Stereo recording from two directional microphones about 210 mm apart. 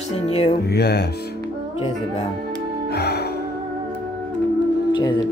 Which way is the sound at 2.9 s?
50° left (ahead or behind).